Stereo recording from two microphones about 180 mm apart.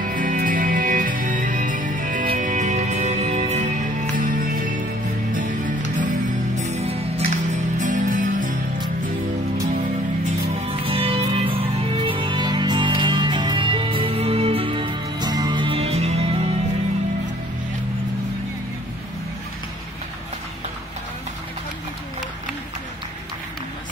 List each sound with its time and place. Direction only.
0.0 s music: 50° right (ahead or behind)
4.2 s music: 50° right (ahead or behind)
6.6 s music: 35° right (ahead or behind)
10.5 s music: 30° right (ahead or behind)